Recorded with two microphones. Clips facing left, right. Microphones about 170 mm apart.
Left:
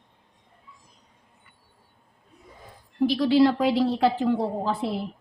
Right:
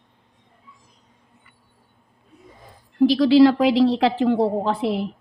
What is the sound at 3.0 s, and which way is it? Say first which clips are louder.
A woman's voice: right 6 dB; 90° right.